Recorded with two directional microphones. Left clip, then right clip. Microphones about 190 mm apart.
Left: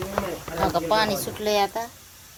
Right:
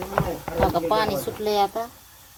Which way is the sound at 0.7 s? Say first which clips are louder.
Even; 15° right (ahead or behind).